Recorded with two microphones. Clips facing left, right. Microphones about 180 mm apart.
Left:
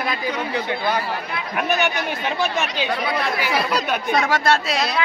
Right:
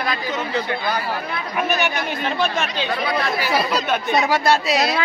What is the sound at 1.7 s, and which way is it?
Speech, 15° left (ahead or behind).